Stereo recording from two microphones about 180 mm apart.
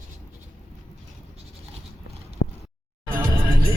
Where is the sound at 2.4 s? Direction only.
90° left.